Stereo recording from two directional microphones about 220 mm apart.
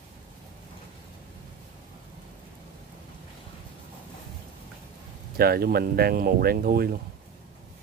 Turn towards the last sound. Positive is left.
turn(degrees=-45)  # may be behind; listen again after turning